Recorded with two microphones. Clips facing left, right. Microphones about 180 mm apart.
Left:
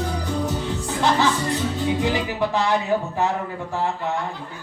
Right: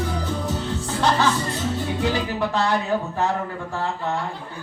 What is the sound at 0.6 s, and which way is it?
Music, 15° left (ahead or behind).